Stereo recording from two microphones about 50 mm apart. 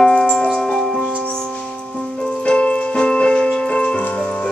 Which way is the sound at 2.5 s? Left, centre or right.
Left.